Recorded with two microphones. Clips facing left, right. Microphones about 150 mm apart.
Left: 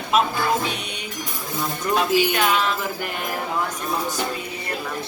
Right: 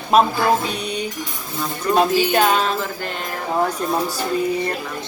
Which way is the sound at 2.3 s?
35° right (ahead or behind).